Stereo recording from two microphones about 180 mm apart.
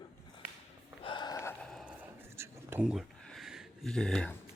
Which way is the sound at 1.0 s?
25° left (ahead or behind).